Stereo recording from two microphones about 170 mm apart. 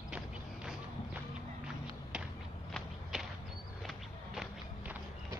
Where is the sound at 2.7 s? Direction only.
Centre (ahead or behind).